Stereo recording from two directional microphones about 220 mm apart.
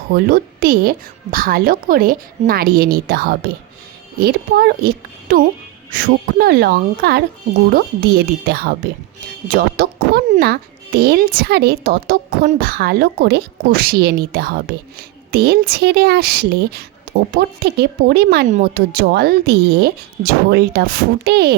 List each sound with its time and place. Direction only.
0.1 s a woman's voice: 40° right (ahead or behind)